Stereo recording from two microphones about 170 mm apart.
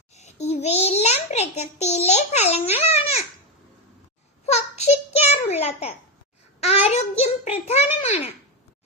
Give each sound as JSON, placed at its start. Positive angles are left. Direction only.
{"t": 0.2, "sound": "a child's voice", "side_deg": 40}
{"t": 4.4, "sound": "a sound", "side_deg": 40}
{"t": 6.8, "sound": "child singing", "side_deg": 40}
{"t": 7.7, "sound": "a child's voice", "side_deg": 40}